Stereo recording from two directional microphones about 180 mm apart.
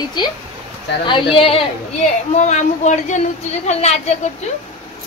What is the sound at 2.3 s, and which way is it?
A woman's voice, 40° left (ahead or behind).